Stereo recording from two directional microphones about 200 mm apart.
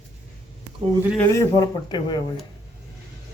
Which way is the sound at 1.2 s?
15° left (ahead or behind).